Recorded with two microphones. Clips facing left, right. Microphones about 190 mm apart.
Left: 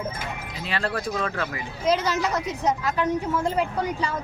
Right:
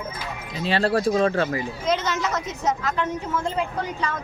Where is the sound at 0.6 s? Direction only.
30° right (ahead or behind).